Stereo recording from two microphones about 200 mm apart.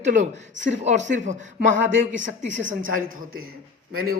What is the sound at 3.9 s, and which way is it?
Speech, 90° right.